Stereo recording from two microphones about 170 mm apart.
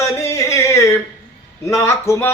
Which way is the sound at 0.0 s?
15° left (ahead or behind).